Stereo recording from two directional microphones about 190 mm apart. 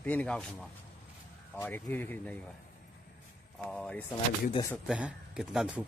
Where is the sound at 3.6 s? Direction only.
5° left (ahead or behind).